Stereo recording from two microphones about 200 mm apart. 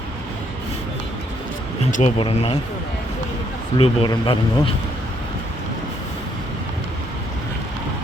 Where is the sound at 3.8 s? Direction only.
25° left (ahead or behind).